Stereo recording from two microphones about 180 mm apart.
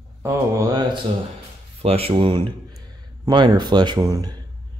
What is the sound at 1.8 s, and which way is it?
Speech, 30° right (ahead or behind).